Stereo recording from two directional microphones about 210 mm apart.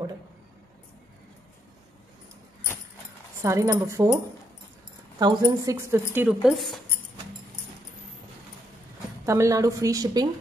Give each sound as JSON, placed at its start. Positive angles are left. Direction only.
{"t": 3.4, "sound": "a woman's voice", "side_deg": -15}
{"t": 5.2, "sound": "a woman's voice", "side_deg": -15}
{"t": 9.2, "sound": "a woman's voice", "side_deg": -15}